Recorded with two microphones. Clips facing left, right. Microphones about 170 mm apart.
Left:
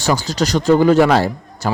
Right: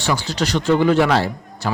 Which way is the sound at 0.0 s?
40° left (ahead or behind).